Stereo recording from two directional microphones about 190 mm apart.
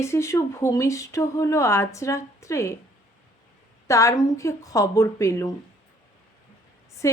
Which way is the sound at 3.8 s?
15° left (ahead or behind).